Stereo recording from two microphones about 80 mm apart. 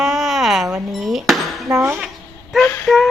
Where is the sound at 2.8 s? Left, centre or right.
Centre.